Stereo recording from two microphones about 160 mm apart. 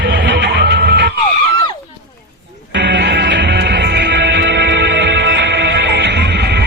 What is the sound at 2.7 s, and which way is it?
Music, 90° right.